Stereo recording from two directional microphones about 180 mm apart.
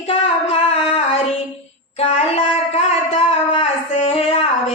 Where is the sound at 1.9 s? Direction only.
35° left (ahead or behind).